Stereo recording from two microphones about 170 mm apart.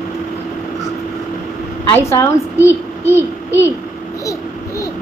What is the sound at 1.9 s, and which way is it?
A child's voice, 15° left (ahead or behind).